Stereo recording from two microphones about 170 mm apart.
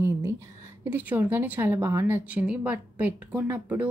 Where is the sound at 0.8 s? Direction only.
10° right (ahead or behind).